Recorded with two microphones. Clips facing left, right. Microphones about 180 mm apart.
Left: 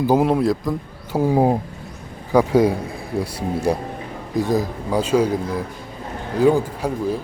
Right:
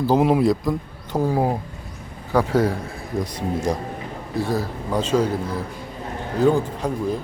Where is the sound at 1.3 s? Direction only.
20° left (ahead or behind).